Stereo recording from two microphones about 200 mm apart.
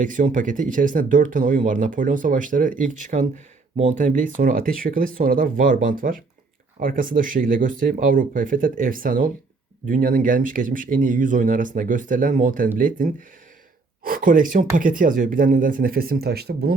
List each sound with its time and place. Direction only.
0.0 s speech: 40° right (ahead or behind)